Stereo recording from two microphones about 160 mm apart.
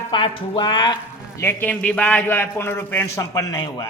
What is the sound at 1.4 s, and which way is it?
A man's voice, 10° left (ahead or behind).